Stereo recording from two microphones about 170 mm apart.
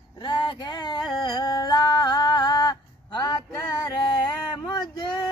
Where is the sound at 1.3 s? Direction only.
25° left (ahead or behind).